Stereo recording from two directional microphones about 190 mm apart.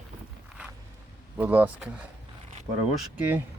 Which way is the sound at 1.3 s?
10° right (ahead or behind).